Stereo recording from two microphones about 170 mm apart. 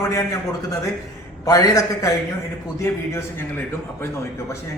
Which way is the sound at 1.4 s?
20° left (ahead or behind).